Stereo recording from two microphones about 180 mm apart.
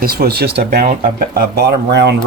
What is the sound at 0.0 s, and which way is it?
Speech, 60° right (ahead or behind).